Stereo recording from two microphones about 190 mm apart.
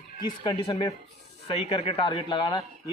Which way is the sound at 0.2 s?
25° left (ahead or behind).